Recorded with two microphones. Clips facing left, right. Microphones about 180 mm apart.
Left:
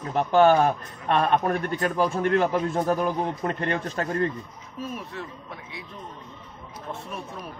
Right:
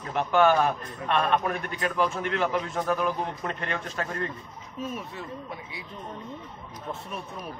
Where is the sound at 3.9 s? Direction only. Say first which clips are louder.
Left 5 dB; 35° left (ahead or behind).